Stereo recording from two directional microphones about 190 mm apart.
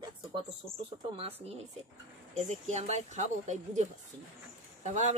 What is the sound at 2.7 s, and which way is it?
Speech, 35° right (ahead or behind).